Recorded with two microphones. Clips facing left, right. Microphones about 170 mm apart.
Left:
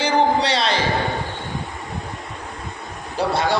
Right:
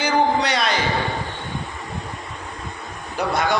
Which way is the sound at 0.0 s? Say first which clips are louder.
Left 1 dB; 30° left (ahead or behind).